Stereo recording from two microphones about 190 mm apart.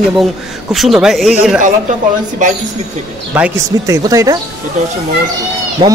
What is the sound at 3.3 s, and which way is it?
A man's voice, 15° right (ahead or behind).